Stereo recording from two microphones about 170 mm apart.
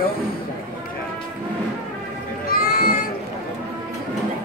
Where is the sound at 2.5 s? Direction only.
60° left (ahead or behind).